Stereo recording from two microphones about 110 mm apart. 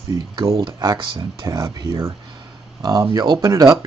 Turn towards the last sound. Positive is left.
turn(degrees=-30)  # may be behind; listen again after turning